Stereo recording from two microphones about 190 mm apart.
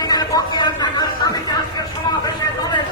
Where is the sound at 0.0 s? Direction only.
20° left (ahead or behind).